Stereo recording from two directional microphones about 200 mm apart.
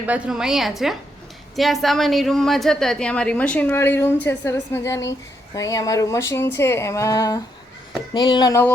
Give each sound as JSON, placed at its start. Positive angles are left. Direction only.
{"t": 0.0, "sound": "a woman's voice", "side_deg": -5}